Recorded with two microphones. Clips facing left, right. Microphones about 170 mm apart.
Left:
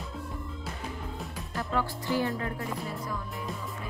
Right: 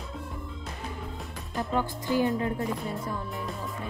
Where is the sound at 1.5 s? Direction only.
20° right (ahead or behind).